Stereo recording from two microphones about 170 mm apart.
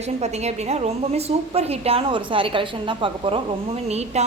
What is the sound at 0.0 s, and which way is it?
A woman's voice, 40° right (ahead or behind).